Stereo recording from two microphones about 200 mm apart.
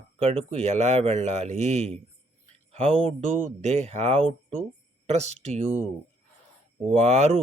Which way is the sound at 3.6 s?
35° right (ahead or behind).